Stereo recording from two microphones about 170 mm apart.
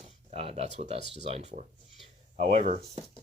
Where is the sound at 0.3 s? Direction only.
35° right (ahead or behind).